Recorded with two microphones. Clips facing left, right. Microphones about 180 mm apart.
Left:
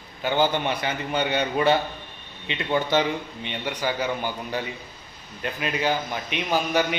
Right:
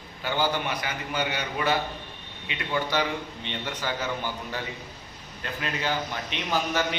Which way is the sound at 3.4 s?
15° left (ahead or behind).